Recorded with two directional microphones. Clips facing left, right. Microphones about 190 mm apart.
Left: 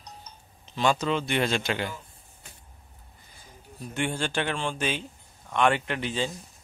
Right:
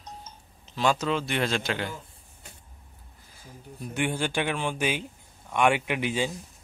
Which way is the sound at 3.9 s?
10° right (ahead or behind).